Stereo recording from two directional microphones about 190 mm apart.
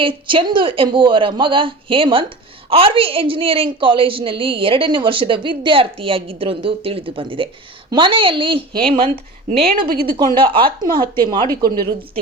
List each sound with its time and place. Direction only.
0.0 s a woman's voice: 25° right (ahead or behind)
9.0 s speech: 45° right (ahead or behind)
10.3 s a woman's voice: 25° right (ahead or behind)
11.6 s a woman's voice: 55° right (ahead or behind)